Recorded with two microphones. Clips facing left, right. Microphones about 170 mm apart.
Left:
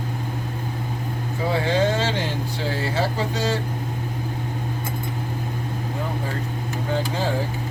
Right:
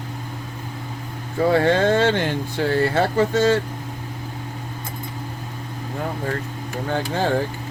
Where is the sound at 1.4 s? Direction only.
60° right (ahead or behind).